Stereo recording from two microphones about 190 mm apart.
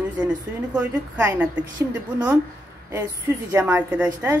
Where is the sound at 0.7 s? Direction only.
5° right (ahead or behind).